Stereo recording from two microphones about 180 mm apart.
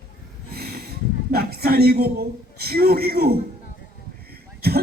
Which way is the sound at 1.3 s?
60° right (ahead or behind).